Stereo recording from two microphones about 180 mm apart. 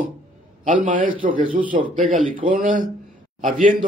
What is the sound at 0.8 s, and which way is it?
A man's voice, 45° right (ahead or behind).